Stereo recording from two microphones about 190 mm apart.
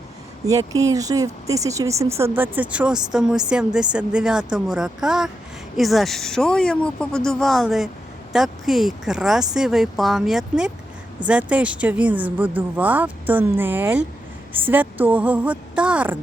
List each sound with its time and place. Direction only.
0.4 s speech: 20° right (ahead or behind)